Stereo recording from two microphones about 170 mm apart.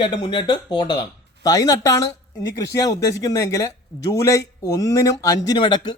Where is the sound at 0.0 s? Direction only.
25° left (ahead or behind).